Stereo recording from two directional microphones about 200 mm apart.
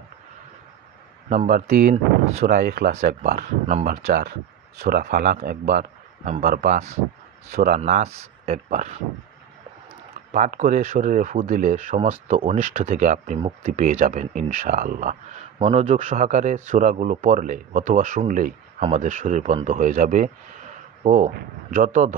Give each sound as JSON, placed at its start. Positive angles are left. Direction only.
{"t": 1.3, "sound": "speech", "side_deg": -40}
{"t": 2.9, "sound": "speech", "side_deg": -35}
{"t": 4.7, "sound": "speech", "side_deg": -50}
{"t": 10.3, "sound": "speech", "side_deg": -40}